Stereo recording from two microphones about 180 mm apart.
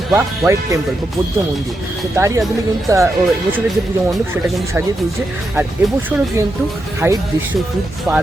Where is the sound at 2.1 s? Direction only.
15° right (ahead or behind).